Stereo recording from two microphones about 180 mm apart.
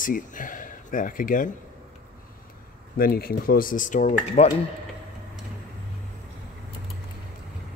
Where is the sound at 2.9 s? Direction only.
55° left (ahead or behind); by 4.5 s 35° left (ahead or behind).